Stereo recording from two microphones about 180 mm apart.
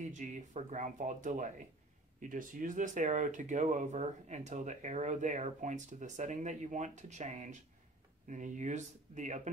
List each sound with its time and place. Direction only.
0.0 s speech: 45° right (ahead or behind)